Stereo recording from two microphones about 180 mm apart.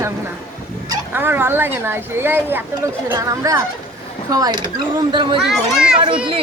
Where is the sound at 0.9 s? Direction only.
10° right (ahead or behind).